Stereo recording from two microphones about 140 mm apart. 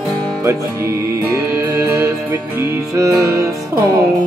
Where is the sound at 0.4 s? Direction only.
20° right (ahead or behind).